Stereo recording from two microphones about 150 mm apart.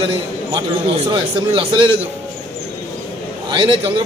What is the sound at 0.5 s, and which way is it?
A man's voice, 35° right (ahead or behind).